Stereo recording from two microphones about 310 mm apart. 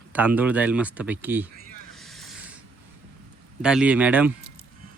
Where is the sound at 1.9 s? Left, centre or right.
Centre.